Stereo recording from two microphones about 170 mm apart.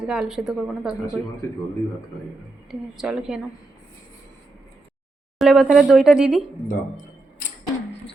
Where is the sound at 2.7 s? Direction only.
Centre (ahead or behind).